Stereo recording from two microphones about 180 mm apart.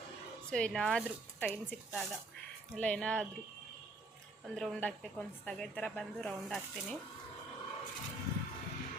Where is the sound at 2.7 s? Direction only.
5° left (ahead or behind).